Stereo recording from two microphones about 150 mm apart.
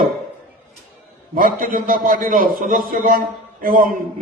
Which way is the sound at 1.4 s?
70° right (ahead or behind).